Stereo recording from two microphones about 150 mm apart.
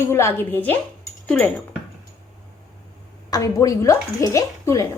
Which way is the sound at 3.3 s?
25° left (ahead or behind).